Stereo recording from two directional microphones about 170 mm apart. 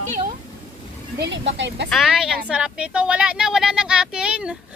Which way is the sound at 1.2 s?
90° right.